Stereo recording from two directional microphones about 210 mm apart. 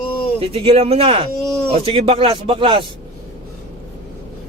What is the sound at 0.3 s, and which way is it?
Speech, 25° right (ahead or behind).